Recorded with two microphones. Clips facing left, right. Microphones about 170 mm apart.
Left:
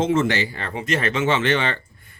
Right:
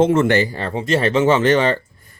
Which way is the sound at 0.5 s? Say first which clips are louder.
Right 5 dB; 35° right (ahead or behind).